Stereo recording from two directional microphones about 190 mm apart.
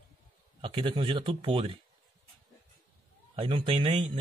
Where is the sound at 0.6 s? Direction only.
25° right (ahead or behind).